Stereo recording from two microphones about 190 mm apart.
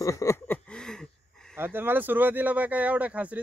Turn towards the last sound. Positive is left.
turn(degrees=-10)  # may be behind; listen again after turning